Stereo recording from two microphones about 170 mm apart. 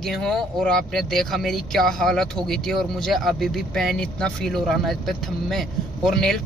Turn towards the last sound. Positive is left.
turn(degrees=0)  # may be behind; listen again after turning